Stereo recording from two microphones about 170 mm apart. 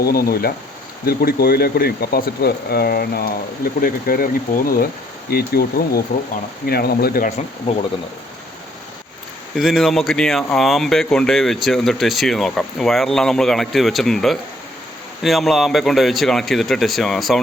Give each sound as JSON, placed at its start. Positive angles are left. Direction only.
{"t": 0.0, "sound": "speech", "side_deg": 65}
{"t": 5.3, "sound": "speech", "side_deg": 65}
{"t": 9.6, "sound": "speech", "side_deg": 0}